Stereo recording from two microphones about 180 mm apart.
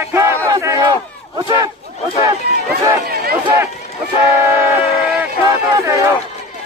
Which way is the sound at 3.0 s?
55° right (ahead or behind).